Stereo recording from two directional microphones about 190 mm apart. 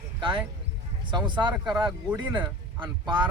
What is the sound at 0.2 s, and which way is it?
Speech, 25° right (ahead or behind).